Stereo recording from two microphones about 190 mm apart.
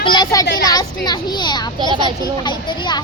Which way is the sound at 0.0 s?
25° left (ahead or behind).